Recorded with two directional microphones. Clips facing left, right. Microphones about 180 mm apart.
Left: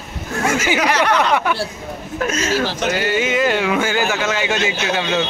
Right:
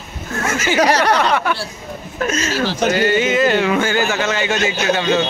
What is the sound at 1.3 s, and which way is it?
Speech, 15° left (ahead or behind).